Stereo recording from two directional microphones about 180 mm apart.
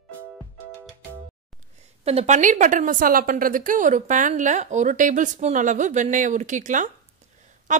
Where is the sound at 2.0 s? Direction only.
35° right (ahead or behind).